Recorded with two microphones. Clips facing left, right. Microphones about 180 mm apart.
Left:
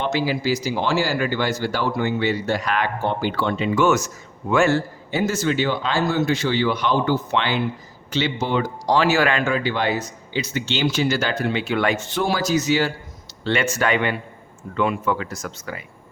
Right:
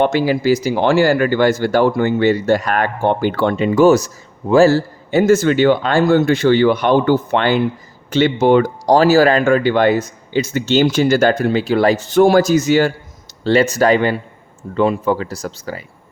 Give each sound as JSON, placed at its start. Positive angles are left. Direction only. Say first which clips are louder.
{"t": 0.0, "sound": "speech", "louder": "right 7 dB", "side_deg": -55}
{"t": 5.1, "sound": "speech", "louder": "right 9 dB", "side_deg": -50}
{"t": 13.4, "sound": "speech", "louder": "right 8 dB", "side_deg": -35}